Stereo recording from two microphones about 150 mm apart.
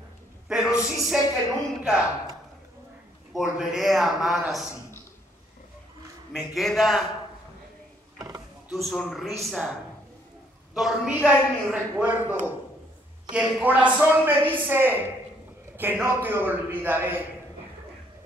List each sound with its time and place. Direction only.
0.5 s a sound: 5° right (ahead or behind)
0.8 s a man's voice: 5° right (ahead or behind)
3.3 s a man's voice: 5° right (ahead or behind)
6.3 s a man's voice: centre (ahead or behind)
8.7 s a man's voice: centre (ahead or behind)
10.7 s a man's voice: 5° right (ahead or behind)